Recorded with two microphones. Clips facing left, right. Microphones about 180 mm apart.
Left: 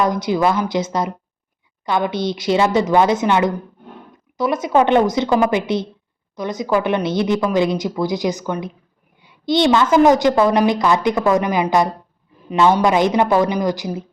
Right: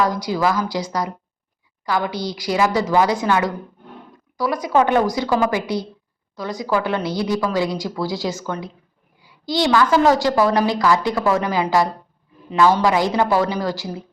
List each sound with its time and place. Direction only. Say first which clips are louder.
0.0 s a woman's voice: left 2 dB; 20° left (ahead or behind)